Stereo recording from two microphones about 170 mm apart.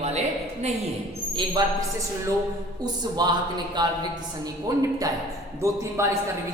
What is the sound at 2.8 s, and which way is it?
A woman's voice, 25° right (ahead or behind).